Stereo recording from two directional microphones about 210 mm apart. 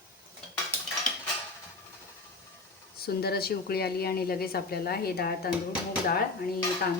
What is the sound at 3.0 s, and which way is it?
A woman's voice, 50° left (ahead or behind).